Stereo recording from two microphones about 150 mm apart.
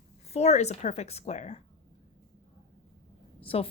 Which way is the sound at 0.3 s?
45° left (ahead or behind).